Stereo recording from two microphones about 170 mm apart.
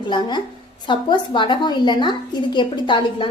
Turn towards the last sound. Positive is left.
turn(degrees=30)  # may be behind; listen again after turning